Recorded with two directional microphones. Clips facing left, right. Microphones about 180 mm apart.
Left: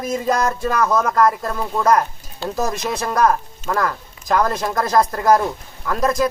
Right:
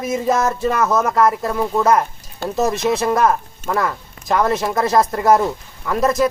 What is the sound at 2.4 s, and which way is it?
Speech, 50° right (ahead or behind).